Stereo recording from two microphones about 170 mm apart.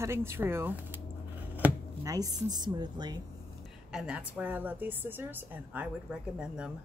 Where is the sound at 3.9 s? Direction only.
5° right (ahead or behind).